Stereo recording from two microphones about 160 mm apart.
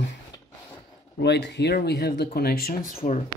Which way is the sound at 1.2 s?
90° left.